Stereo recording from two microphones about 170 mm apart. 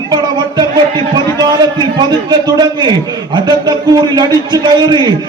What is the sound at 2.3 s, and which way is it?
A man's voice, 25° right (ahead or behind).